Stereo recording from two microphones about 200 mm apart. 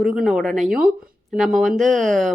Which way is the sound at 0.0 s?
Centre (ahead or behind).